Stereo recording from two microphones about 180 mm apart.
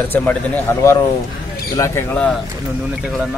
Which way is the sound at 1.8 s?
15° left (ahead or behind).